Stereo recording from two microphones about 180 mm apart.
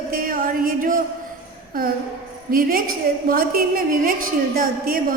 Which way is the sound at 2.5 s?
50° right (ahead or behind).